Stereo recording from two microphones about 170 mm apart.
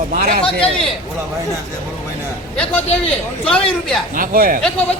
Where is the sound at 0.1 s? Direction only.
60° right (ahead or behind).